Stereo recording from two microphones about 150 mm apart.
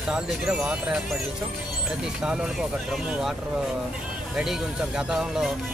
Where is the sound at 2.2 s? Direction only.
5° right (ahead or behind).